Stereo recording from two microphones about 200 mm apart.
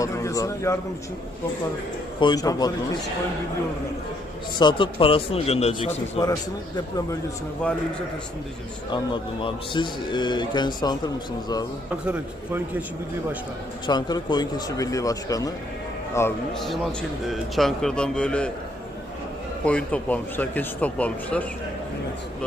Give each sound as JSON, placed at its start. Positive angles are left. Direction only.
{"t": 0.0, "sound": "a sound", "side_deg": 15}
{"t": 2.2, "sound": "speech", "side_deg": 20}
{"t": 4.6, "sound": "speech", "side_deg": 25}
{"t": 8.9, "sound": "speech", "side_deg": 25}
{"t": 12.0, "sound": "speech", "side_deg": -5}
{"t": 13.8, "sound": "speech", "side_deg": 20}
{"t": 16.6, "sound": "a man's voice", "side_deg": 0}
{"t": 19.6, "sound": "speech", "side_deg": 5}